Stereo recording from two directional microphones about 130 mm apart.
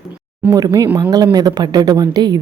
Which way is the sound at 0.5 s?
25° right (ahead or behind).